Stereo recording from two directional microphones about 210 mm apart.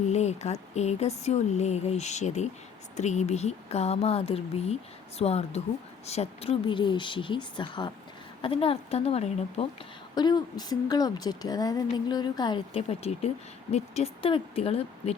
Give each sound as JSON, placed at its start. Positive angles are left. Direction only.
{"t": 0.1, "sound": "a woman's voice", "side_deg": 30}